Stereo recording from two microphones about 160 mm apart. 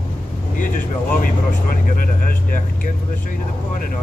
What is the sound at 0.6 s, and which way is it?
Vehicle, 55° left (ahead or behind).